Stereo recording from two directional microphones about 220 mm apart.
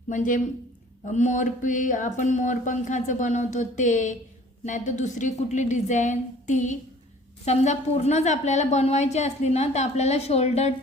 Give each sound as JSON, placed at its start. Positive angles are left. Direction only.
{"t": 0.1, "sound": "a woman's voice", "side_deg": 35}